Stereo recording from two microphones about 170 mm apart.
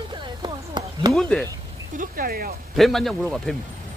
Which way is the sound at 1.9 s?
55° right (ahead or behind).